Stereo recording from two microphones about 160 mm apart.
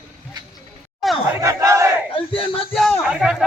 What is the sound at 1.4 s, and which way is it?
Battle cry, 20° right (ahead or behind).